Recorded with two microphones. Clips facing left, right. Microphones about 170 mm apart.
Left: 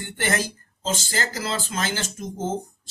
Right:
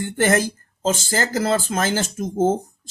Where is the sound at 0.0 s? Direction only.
45° right (ahead or behind).